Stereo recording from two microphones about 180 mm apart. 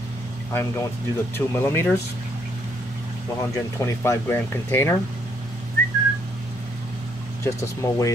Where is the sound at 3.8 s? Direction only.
15° left (ahead or behind).